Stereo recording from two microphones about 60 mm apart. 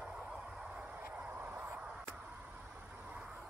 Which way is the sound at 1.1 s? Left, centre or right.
Right.